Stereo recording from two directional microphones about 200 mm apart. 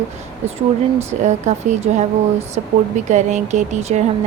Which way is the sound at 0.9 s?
35° right (ahead or behind).